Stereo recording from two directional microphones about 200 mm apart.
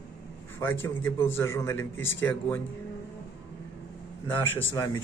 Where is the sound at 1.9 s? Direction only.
75° left (ahead or behind).